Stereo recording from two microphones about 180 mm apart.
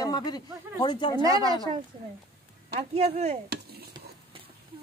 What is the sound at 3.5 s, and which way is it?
Stir, 60° right (ahead or behind).